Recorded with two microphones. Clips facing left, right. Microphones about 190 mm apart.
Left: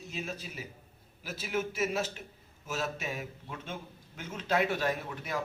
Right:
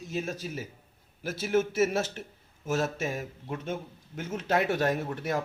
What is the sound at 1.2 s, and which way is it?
A man's voice, 50° right (ahead or behind).